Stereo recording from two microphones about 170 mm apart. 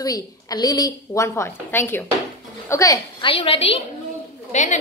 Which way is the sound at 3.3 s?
35° left (ahead or behind).